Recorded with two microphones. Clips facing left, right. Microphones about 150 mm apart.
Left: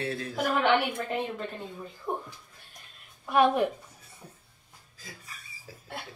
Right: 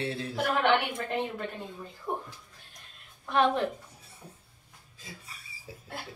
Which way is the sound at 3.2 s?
10° left (ahead or behind).